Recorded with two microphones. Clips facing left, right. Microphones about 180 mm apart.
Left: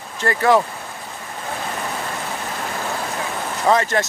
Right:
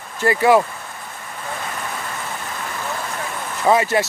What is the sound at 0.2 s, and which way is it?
Speech, 10° right (ahead or behind).